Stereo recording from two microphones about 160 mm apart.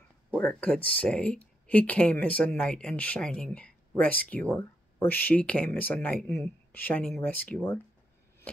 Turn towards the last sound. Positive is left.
turn(degrees=10)  # may be behind; listen again after turning